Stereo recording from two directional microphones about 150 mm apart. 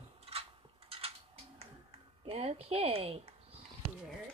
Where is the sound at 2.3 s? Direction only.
40° right (ahead or behind).